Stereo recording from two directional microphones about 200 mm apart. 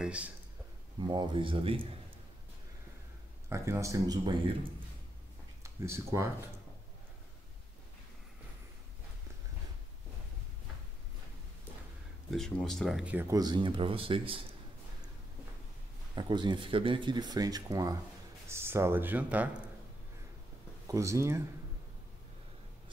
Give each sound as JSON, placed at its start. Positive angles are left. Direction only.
{"t": 0.0, "sound": "speech", "side_deg": -5}
{"t": 0.9, "sound": "speech", "side_deg": -20}
{"t": 3.4, "sound": "speech", "side_deg": -15}
{"t": 5.6, "sound": "speech", "side_deg": -15}
{"t": 12.3, "sound": "speech", "side_deg": 5}
{"t": 13.3, "sound": "speech", "side_deg": -20}
{"t": 16.2, "sound": "speech", "side_deg": -20}
{"t": 20.8, "sound": "speech", "side_deg": -15}